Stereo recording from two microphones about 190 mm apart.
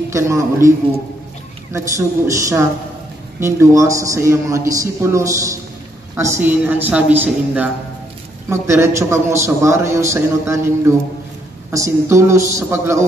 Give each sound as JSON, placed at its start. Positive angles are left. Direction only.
{"t": 0.1, "sound": "a man's voice", "side_deg": -15}